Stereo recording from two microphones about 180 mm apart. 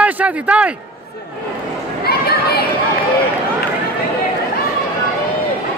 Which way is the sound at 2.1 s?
60° left (ahead or behind).